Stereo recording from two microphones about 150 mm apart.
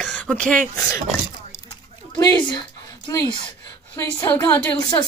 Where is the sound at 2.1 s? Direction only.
30° left (ahead or behind).